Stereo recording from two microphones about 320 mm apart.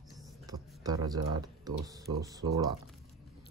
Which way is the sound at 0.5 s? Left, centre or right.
Centre.